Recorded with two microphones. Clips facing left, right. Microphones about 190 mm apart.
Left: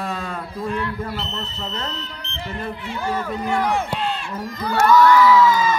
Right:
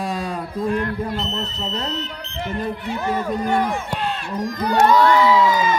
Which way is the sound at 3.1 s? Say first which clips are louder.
Right 3 dB; 15° right (ahead or behind).